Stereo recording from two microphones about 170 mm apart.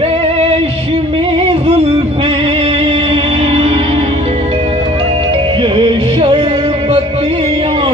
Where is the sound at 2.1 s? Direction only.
35° right (ahead or behind).